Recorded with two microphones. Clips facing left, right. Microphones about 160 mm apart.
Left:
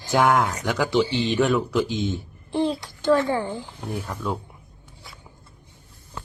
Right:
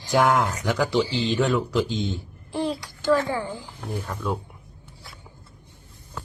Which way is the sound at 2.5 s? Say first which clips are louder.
Left 3 dB; 25° left (ahead or behind).